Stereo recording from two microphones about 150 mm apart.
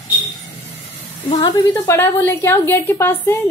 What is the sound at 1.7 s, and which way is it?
A woman's voice, 15° left (ahead or behind).